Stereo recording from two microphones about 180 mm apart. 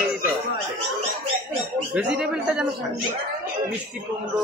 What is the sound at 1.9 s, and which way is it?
Speech, 5° right (ahead or behind).